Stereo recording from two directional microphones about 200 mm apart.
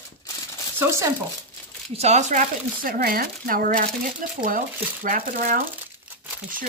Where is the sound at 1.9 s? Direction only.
35° right (ahead or behind).